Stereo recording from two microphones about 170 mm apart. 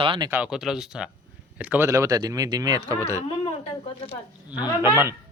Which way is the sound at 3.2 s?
30° left (ahead or behind).